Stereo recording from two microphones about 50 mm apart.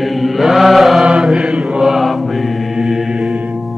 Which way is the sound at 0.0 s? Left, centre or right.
Centre.